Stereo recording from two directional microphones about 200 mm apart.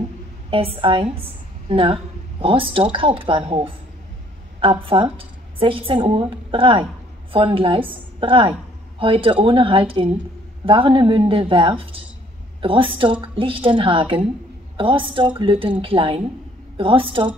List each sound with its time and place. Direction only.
0.5 s a woman's voice: 25° right (ahead or behind)